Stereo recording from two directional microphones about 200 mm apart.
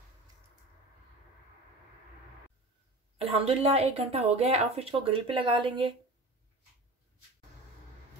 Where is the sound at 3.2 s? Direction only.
30° right (ahead or behind).